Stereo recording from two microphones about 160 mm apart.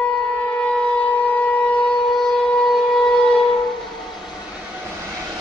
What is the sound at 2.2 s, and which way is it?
Civil defense siren, 5° left (ahead or behind).